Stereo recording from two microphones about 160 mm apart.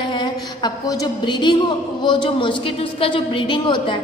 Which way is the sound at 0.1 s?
25° left (ahead or behind).